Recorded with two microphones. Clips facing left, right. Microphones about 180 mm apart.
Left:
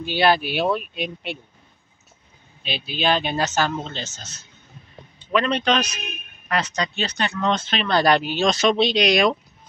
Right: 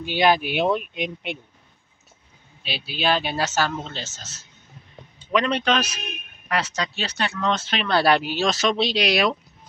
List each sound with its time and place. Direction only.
0.0 s speech: 15° right (ahead or behind)
2.6 s speech: 5° right (ahead or behind)